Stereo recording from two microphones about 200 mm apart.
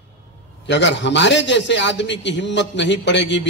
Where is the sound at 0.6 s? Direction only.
65° left (ahead or behind).